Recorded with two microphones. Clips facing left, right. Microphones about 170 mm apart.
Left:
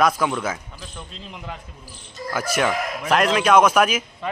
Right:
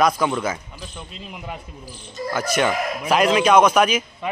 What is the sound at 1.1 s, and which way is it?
Speech, 10° right (ahead or behind).